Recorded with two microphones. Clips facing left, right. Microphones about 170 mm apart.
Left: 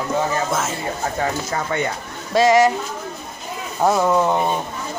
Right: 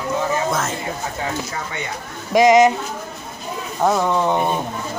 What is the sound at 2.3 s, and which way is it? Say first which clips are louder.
Speech: right 2 dB; 15° right (ahead or behind).